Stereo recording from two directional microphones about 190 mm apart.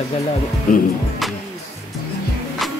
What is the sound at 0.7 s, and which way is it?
Speech, 45° left (ahead or behind).